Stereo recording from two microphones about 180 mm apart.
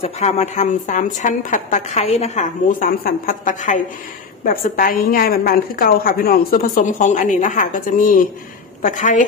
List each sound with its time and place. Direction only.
0.0 s a woman's voice: 35° left (ahead or behind)